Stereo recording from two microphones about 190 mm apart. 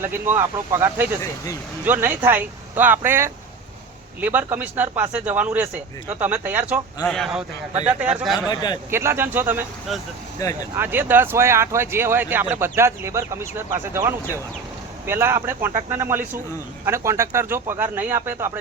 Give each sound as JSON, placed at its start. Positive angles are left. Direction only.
{"t": 0.0, "sound": "speech", "side_deg": -10}
{"t": 7.0, "sound": "speech", "side_deg": 0}
{"t": 8.4, "sound": "a man's voice", "side_deg": 20}
{"t": 8.9, "sound": "speech", "side_deg": -15}
{"t": 10.4, "sound": "speech", "side_deg": 15}
{"t": 10.8, "sound": "speech", "side_deg": -10}